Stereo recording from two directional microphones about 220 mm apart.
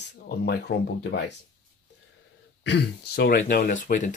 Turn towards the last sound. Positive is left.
turn(degrees=35)  # may be behind; listen again after turning